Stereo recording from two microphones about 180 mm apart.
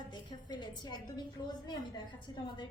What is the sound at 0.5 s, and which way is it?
Speech, 25° left (ahead or behind).